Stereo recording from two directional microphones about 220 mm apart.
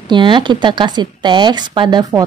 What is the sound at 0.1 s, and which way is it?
A woman's voice, 20° right (ahead or behind).